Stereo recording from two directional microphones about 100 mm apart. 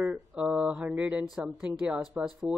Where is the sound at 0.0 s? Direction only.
10° right (ahead or behind).